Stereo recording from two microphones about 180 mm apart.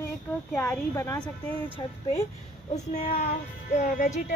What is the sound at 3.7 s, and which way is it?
Speech, 40° left (ahead or behind).